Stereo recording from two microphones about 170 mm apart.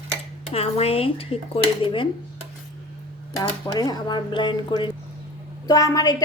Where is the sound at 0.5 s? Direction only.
35° left (ahead or behind).